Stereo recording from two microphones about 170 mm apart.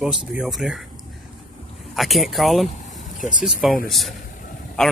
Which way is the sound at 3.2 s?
50° left (ahead or behind).